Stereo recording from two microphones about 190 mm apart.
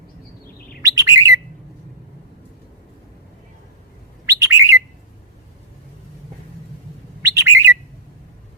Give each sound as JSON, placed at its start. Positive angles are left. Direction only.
{"t": 0.8, "sound": "bird", "side_deg": -15}
{"t": 4.3, "sound": "bird", "side_deg": -15}
{"t": 7.2, "sound": "bird", "side_deg": -15}